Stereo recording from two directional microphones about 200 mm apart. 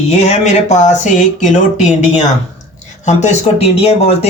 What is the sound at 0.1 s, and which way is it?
Speech, 35° left (ahead or behind).